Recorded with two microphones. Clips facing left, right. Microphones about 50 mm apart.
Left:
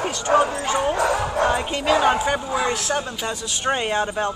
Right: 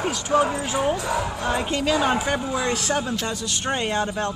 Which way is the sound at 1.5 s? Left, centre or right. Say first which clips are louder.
Right 1 dB; centre.